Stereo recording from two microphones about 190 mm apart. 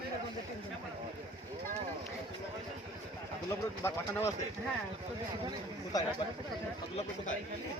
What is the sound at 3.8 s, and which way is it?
Speech, 15° left (ahead or behind).